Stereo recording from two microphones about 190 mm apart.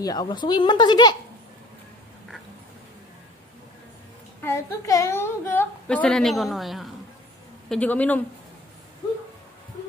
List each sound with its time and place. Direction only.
0.0 s speech: 20° left (ahead or behind)
4.4 s a woman's voice: 15° left (ahead or behind)